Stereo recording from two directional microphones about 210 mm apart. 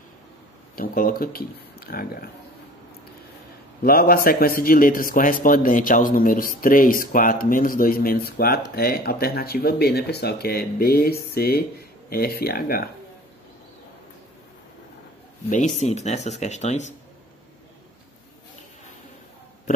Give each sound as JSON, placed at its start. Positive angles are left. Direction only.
{"t": 0.7, "sound": "a man's voice", "side_deg": 45}
{"t": 3.8, "sound": "a man's voice", "side_deg": 45}
{"t": 15.5, "sound": "speech", "side_deg": 35}